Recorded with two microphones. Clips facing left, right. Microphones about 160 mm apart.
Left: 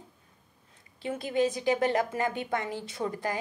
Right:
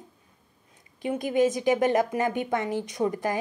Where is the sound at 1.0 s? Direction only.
15° right (ahead or behind).